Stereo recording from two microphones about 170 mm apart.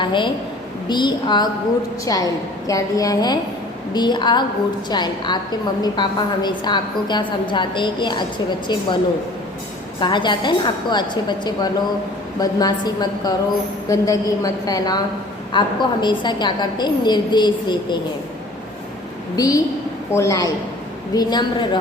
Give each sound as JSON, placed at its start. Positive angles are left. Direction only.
{"t": 0.0, "sound": "a woman's voice", "side_deg": 30}
{"t": 10.0, "sound": "a woman's voice", "side_deg": 25}
{"t": 19.4, "sound": "a woman's voice", "side_deg": 20}